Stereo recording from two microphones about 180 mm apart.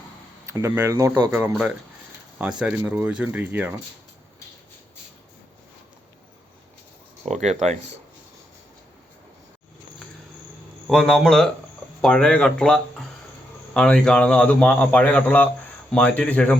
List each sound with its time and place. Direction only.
0.6 s speech: 15° right (ahead or behind)
1.3 s speech: 10° right (ahead or behind)
7.3 s speech: 40° right (ahead or behind)
10.8 s a man's voice: 5° left (ahead or behind)